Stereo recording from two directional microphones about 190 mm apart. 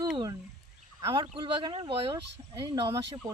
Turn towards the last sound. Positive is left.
turn(degrees=-20)  # may be behind; listen again after turning